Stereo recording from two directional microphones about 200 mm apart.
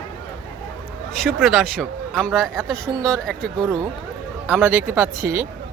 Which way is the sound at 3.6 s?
15° right (ahead or behind).